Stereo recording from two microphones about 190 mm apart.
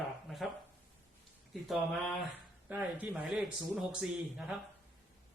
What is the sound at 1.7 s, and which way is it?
Speech, centre (ahead or behind).